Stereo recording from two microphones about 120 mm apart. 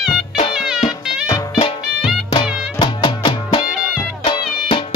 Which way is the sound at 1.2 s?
30° left (ahead or behind).